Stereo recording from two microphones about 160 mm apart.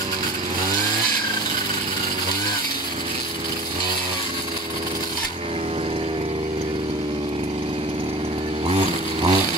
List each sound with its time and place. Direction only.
8.6 s chainsaw: 35° right (ahead or behind)